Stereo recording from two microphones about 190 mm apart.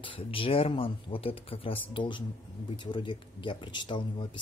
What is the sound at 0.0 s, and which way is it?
Speech, 25° left (ahead or behind).